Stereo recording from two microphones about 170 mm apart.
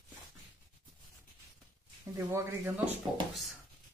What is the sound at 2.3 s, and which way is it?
Speech, 15° right (ahead or behind).